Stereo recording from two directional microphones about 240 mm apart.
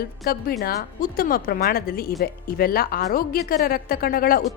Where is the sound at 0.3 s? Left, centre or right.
Left.